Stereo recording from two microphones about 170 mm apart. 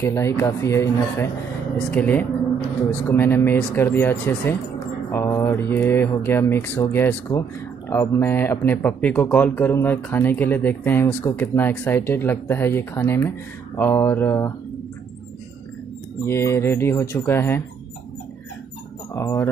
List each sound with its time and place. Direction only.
0.0 s speech: 15° left (ahead or behind)
16.3 s speech: 15° left (ahead or behind)
19.1 s speech: 15° left (ahead or behind)